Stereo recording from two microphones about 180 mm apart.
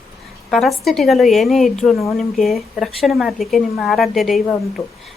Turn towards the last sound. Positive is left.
turn(degrees=20)  # may be behind; listen again after turning